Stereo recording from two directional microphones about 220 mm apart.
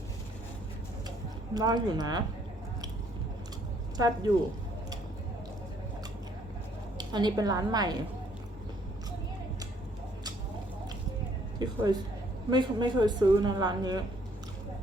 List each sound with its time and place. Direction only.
1.5 s a woman's voice: 20° right (ahead or behind)
3.9 s a woman's voice: 15° right (ahead or behind)
7.0 s a woman's voice: 20° right (ahead or behind)
11.6 s a woman's voice: 20° right (ahead or behind)